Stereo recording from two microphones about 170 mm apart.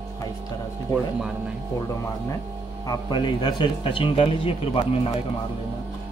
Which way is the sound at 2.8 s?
25° left (ahead or behind).